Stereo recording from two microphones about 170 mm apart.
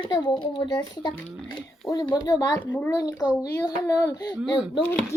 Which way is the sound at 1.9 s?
25° left (ahead or behind).